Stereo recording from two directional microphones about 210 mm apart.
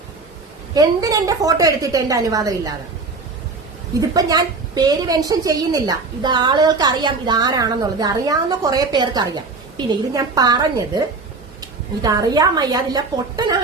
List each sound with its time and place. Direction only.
0.7 s a woman's voice: 15° right (ahead or behind)
4.0 s a woman's voice: 15° right (ahead or behind)